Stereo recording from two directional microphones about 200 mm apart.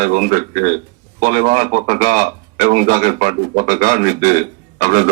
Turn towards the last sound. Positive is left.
turn(degrees=-45)  # may be behind; listen again after turning